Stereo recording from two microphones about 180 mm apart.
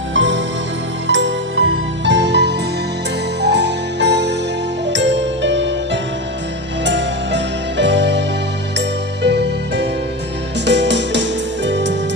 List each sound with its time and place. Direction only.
0.1 s music: 90° right
9.2 s music: 70° right (ahead or behind)